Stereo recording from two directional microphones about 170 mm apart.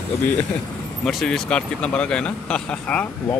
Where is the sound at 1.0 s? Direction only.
Centre (ahead or behind).